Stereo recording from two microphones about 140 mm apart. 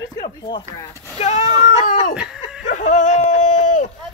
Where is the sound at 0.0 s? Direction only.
30° left (ahead or behind).